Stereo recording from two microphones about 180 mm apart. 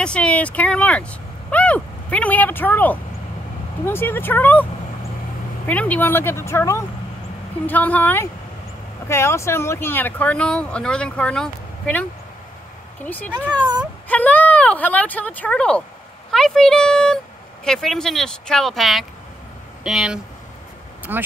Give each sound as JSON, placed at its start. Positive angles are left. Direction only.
{"t": 0.0, "sound": "speech", "side_deg": 5}
{"t": 5.7, "sound": "speech", "side_deg": 10}